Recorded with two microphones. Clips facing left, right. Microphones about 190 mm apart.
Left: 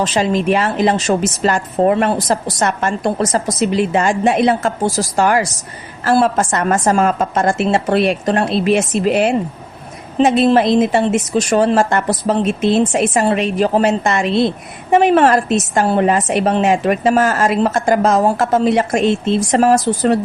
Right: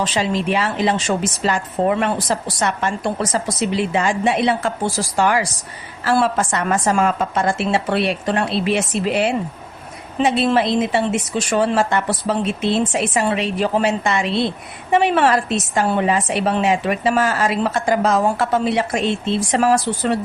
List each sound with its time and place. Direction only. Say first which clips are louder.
0.0 s speech: left 4 dB; 45° left (ahead or behind)